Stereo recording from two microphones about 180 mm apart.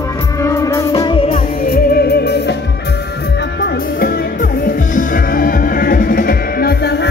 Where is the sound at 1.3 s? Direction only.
55° left (ahead or behind); by 2.6 s 70° left (ahead or behind).